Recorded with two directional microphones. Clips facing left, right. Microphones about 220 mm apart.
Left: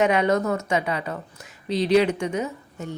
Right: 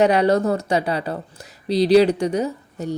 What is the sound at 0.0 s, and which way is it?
Speech, 35° right (ahead or behind).